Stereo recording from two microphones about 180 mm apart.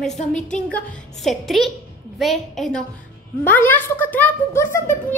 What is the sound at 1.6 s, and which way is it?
A woman's voice, centre (ahead or behind).